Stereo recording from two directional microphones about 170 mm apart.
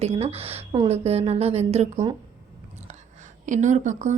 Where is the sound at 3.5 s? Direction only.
45° right (ahead or behind).